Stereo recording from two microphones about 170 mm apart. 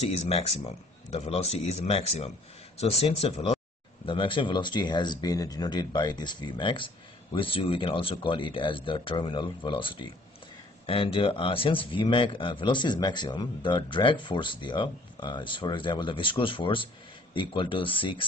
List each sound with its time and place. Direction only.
0.7 s a man's voice: 40° left (ahead or behind)